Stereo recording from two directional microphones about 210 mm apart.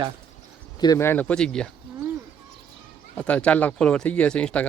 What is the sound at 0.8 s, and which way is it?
Speech, 15° left (ahead or behind).